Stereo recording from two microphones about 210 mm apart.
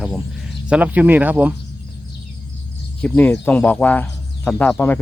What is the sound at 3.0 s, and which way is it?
Speech, 10° left (ahead or behind).